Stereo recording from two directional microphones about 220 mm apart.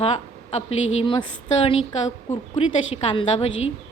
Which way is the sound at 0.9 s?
20° left (ahead or behind).